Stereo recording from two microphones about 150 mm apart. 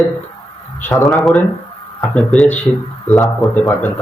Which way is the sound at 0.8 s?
15° left (ahead or behind).